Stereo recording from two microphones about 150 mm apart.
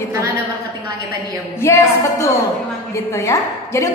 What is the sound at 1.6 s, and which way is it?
A woman's voice, 20° left (ahead or behind).